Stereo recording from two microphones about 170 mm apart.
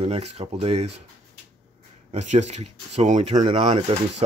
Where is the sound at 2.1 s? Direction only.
40° right (ahead or behind).